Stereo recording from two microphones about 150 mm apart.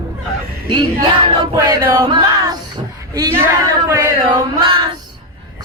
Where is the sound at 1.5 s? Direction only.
25° right (ahead or behind).